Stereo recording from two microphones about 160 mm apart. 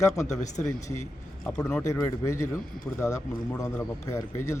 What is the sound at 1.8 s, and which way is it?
A man's voice, 20° left (ahead or behind).